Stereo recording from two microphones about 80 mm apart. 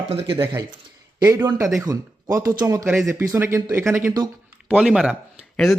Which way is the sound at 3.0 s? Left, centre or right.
Right.